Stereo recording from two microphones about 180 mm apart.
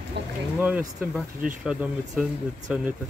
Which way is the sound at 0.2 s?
70° right (ahead or behind).